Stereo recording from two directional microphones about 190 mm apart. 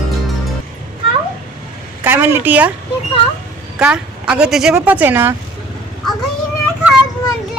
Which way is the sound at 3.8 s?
5° right (ahead or behind).